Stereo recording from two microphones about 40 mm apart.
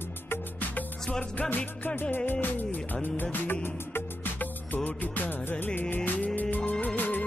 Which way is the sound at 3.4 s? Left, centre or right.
Left.